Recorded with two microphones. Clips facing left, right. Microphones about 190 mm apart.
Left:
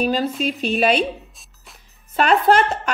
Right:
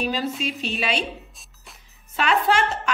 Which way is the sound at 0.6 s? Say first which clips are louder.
Left 12 dB; 50° left (ahead or behind).